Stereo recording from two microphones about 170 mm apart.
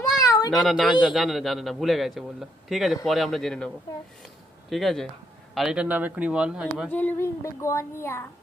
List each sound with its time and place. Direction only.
0.2 s a sound: 20° left (ahead or behind)
0.5 s a man's voice: centre (ahead or behind)
6.9 s a woman's voice: 10° left (ahead or behind)